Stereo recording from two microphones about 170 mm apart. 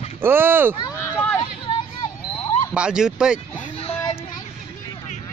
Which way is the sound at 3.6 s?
35° left (ahead or behind).